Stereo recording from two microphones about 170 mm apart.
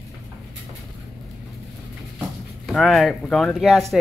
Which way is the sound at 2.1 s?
Centre (ahead or behind).